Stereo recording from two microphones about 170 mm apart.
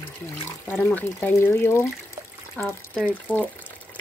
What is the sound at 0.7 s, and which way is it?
Speech, 10° left (ahead or behind).